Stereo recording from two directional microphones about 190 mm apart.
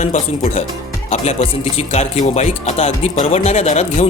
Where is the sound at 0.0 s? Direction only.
40° left (ahead or behind).